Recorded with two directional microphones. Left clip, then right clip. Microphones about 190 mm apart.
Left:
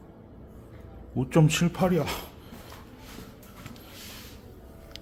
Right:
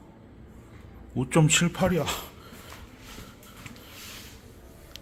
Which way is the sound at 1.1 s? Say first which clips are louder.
Right 1 dB; 5° left (ahead or behind).